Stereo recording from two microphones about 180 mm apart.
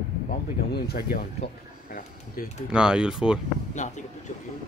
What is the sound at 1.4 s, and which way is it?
Speech, 30° left (ahead or behind).